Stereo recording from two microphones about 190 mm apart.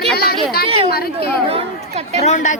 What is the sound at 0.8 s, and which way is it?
Speech, 55° left (ahead or behind).